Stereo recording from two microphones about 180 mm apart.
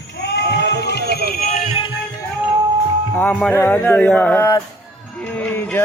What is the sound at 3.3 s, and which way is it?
Speech, 5° left (ahead or behind).